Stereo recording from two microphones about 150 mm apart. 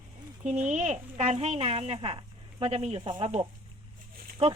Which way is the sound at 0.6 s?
50° right (ahead or behind).